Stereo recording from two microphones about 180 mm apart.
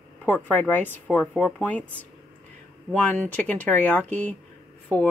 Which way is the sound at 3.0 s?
5° left (ahead or behind).